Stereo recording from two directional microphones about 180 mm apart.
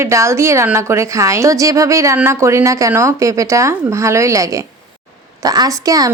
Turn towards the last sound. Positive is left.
turn(degrees=-20)  # may be behind; listen again after turning